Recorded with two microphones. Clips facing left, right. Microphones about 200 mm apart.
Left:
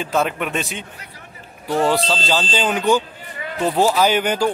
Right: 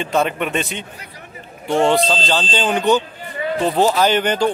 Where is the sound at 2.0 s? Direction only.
10° left (ahead or behind).